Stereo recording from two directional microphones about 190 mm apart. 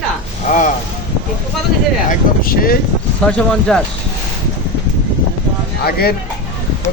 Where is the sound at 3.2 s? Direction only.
5° left (ahead or behind).